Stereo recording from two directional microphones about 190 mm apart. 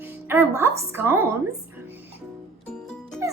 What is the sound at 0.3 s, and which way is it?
A woman's voice, 10° right (ahead or behind).